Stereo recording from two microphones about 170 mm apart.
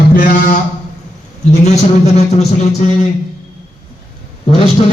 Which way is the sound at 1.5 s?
40° left (ahead or behind).